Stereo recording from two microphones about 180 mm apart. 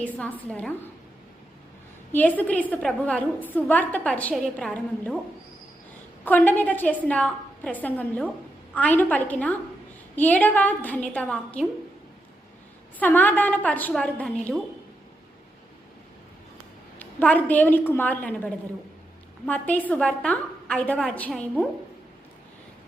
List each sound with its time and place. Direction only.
0.0 s a woman's voice: 5° left (ahead or behind)
2.1 s a woman's voice: 10° left (ahead or behind)
6.2 s a woman's voice: 10° left (ahead or behind)
13.0 s a woman's voice: 10° left (ahead or behind)
17.0 s a woman's voice: 10° left (ahead or behind)